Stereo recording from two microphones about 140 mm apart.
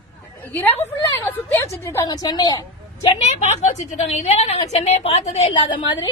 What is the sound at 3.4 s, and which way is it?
A woman's voice, 55° left (ahead or behind).